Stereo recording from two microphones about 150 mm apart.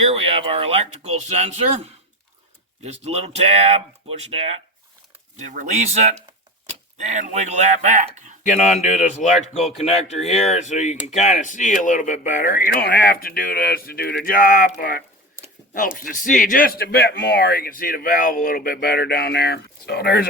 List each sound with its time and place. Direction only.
0.1 s speech: 40° right (ahead or behind)
2.8 s speech: 45° right (ahead or behind)
5.4 s speech: 55° right (ahead or behind)
8.4 s speech: 50° left (ahead or behind); by 20.2 s 90° left